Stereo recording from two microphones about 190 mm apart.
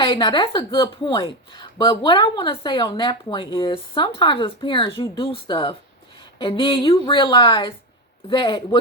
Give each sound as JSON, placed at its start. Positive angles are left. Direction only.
{"t": 0.0, "sound": "a woman's voice", "side_deg": 25}